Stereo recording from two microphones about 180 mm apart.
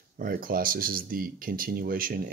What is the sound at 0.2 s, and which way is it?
Speech, 50° right (ahead or behind).